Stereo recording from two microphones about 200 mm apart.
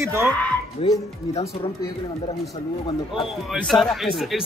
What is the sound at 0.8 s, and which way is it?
Speech, 25° left (ahead or behind).